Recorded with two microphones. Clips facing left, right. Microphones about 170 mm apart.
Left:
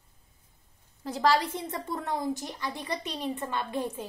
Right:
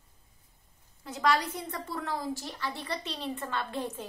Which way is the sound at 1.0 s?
35° left (ahead or behind).